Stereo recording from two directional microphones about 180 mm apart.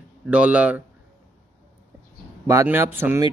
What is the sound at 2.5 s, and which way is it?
Speech, 15° right (ahead or behind).